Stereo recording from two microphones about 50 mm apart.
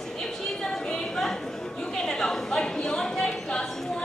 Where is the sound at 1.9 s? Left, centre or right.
Centre.